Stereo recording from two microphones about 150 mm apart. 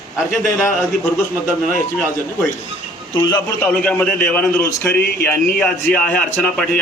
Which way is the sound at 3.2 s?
15° left (ahead or behind).